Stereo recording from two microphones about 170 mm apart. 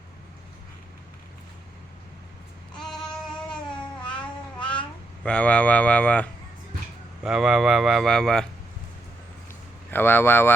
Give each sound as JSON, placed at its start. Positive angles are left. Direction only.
{"t": 2.7, "sound": "child singing", "side_deg": 5}
{"t": 3.7, "sound": "cat", "side_deg": 30}
{"t": 4.1, "sound": "cat", "side_deg": 5}
{"t": 5.2, "sound": "speech", "side_deg": 5}
{"t": 7.3, "sound": "speech", "side_deg": 0}
{"t": 9.9, "sound": "speech", "side_deg": 10}